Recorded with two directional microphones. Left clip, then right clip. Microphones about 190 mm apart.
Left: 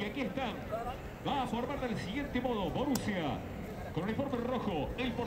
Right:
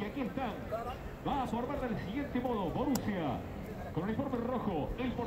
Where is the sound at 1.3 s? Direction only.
20° left (ahead or behind).